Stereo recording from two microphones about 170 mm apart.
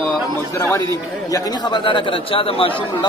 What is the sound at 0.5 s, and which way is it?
A man's voice, 20° left (ahead or behind).